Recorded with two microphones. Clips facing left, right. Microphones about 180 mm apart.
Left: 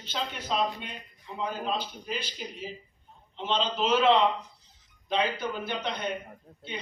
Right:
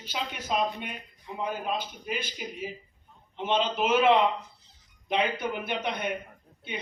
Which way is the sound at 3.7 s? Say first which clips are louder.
Even; 10° right (ahead or behind).